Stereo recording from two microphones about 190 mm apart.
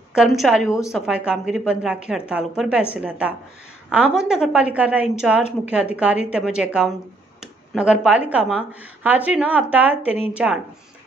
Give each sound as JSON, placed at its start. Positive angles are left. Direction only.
{"t": 0.1, "sound": "a woman's voice", "side_deg": 0}